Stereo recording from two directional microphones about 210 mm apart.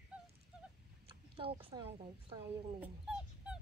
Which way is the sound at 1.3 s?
25° right (ahead or behind).